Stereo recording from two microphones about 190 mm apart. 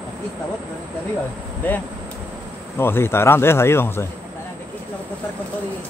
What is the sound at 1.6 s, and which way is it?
Speech, 10° left (ahead or behind).